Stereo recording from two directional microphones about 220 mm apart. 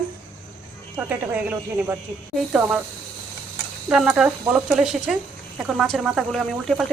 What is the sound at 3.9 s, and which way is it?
Speech, 5° right (ahead or behind).